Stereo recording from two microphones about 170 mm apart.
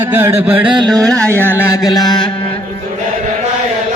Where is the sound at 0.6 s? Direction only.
25° right (ahead or behind).